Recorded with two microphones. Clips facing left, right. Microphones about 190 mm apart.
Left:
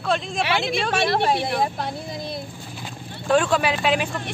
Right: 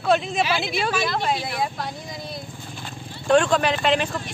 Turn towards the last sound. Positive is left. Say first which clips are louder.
# right 1 dB
turn(degrees=5)  # may be behind; listen again after turning